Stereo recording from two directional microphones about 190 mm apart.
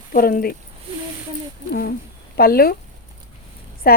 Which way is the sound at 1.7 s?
55° left (ahead or behind).